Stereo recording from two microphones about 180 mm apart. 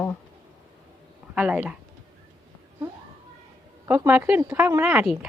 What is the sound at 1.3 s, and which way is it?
Speech, 5° right (ahead or behind).